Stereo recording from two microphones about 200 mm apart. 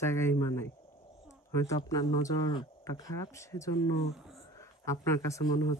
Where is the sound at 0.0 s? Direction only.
15° left (ahead or behind).